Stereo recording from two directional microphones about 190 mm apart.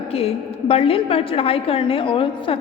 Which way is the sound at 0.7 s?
30° left (ahead or behind).